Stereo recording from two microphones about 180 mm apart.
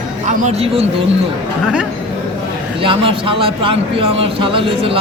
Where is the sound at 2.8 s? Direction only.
30° right (ahead or behind).